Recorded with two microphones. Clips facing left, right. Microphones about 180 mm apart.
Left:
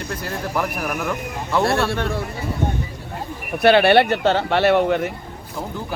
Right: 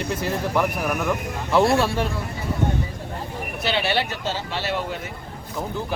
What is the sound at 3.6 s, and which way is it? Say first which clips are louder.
Speech: left 11 dB; 60° left (ahead or behind).